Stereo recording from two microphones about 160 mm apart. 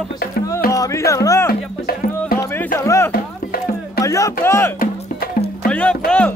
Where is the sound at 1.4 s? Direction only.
70° left (ahead or behind).